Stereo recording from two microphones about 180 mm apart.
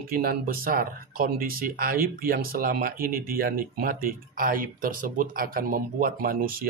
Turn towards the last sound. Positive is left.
turn(degrees=-55)  # may be behind; listen again after turning